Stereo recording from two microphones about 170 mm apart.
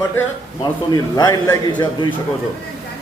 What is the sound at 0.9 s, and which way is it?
A man's voice, 20° left (ahead or behind).